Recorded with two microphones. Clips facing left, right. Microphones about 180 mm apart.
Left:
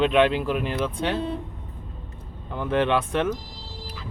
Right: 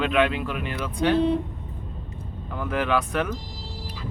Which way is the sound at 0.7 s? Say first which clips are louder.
Right 2 dB; 25° left (ahead or behind).